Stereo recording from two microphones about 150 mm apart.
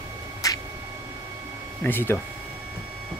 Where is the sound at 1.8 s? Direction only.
15° left (ahead or behind).